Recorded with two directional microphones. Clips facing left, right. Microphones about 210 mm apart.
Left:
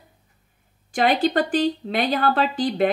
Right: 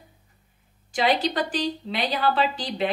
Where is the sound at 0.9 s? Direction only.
55° left (ahead or behind).